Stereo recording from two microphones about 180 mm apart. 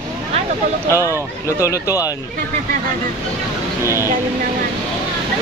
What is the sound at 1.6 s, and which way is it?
Speech, 20° left (ahead or behind).